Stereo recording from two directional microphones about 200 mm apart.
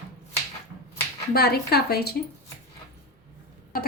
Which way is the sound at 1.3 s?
50° left (ahead or behind).